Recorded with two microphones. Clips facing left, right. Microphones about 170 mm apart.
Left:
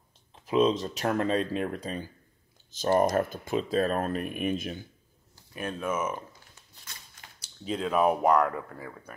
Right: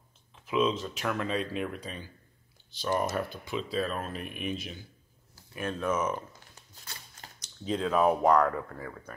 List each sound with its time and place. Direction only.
0.5 s speech: 40° left (ahead or behind)
5.5 s speech: 15° left (ahead or behind)
7.7 s speech: 10° left (ahead or behind)